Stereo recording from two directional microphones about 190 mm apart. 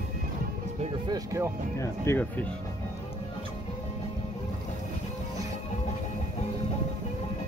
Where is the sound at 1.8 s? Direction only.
10° left (ahead or behind).